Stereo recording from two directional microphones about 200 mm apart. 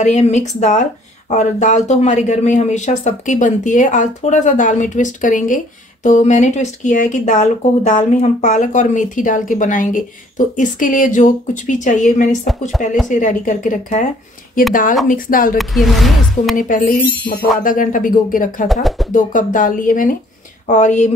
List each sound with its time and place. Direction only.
0.0 s speech: 35° left (ahead or behind)
15.5 s speech: centre (ahead or behind)
16.5 s speech: 40° left (ahead or behind)
18.7 s speech: centre (ahead or behind)
19.1 s speech: 40° left (ahead or behind)